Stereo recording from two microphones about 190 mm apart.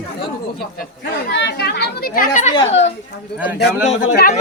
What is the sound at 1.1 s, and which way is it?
Speech, 60° left (ahead or behind).